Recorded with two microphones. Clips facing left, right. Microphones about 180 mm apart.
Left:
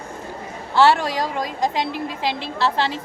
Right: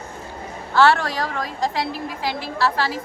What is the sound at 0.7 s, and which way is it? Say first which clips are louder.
A woman's voice: left 1 dB; 15° left (ahead or behind).